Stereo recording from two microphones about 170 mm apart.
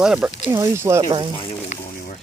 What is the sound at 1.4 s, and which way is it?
Speech, 45° left (ahead or behind).